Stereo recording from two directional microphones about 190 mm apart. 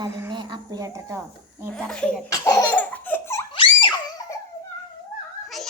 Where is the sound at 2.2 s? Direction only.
15° left (ahead or behind).